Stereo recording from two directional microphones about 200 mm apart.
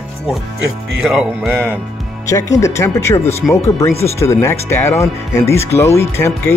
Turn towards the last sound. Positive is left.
turn(degrees=10)  # may be behind; listen again after turning